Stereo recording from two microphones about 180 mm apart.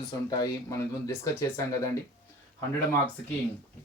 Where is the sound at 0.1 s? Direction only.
20° left (ahead or behind).